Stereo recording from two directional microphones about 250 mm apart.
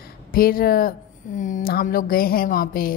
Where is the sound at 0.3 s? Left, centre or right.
Left.